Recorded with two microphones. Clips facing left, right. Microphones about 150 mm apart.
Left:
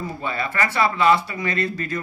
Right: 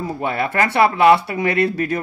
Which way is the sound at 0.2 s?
60° right (ahead or behind).